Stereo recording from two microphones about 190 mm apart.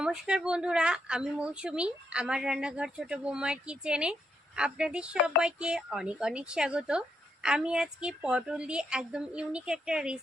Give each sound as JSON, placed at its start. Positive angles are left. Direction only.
{"t": 0.0, "sound": "speech", "side_deg": -5}